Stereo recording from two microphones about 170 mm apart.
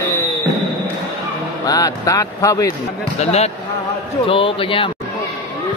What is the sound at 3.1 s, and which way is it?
A man's voice, 40° left (ahead or behind).